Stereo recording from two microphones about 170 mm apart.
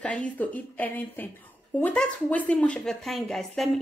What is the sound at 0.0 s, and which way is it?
A woman's voice, 5° left (ahead or behind).